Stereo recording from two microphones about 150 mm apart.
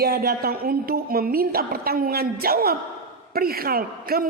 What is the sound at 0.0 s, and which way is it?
A man's voice, 90° right.